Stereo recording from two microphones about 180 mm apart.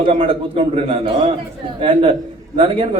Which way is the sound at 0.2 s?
30° right (ahead or behind).